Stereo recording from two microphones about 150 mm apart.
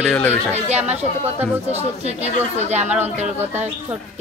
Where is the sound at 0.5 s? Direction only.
45° right (ahead or behind).